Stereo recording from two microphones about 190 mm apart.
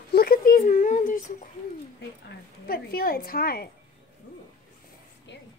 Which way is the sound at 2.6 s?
50° left (ahead or behind).